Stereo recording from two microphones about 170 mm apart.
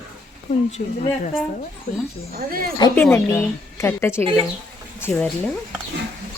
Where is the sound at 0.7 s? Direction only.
40° left (ahead or behind).